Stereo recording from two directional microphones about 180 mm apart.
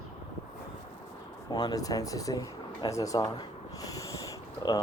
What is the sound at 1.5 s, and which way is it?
Speech, 20° left (ahead or behind).